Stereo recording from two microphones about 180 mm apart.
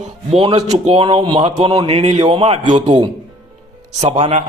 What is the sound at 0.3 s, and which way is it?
A man's voice, 35° right (ahead or behind).